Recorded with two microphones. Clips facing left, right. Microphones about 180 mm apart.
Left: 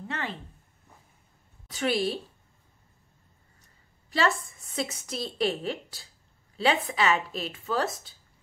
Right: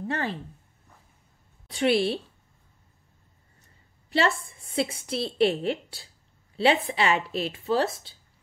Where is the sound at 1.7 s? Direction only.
30° right (ahead or behind).